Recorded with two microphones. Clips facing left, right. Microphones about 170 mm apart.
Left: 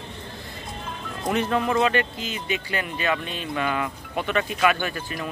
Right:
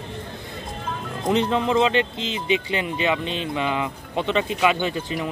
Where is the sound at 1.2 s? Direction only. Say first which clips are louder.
Right 2 dB; 20° right (ahead or behind).